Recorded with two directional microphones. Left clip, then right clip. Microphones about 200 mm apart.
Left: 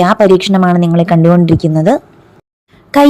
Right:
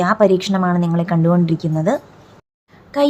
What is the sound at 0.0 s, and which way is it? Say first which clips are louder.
Speech: left 6 dB; 30° left (ahead or behind).